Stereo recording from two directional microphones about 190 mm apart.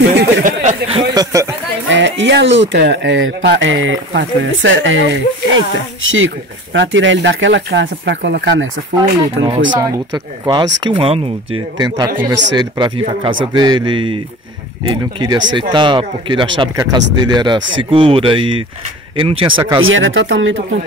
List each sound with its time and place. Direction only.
0.0 s speech: 60° right (ahead or behind)
0.5 s a sound: 40° right (ahead or behind)
1.1 s speech: 15° right (ahead or behind)
1.9 s speech: 70° right (ahead or behind)
9.7 s speech: 20° right (ahead or behind)
19.8 s speech: 90° right